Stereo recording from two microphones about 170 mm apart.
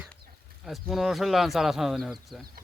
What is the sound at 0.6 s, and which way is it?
Speech, centre (ahead or behind).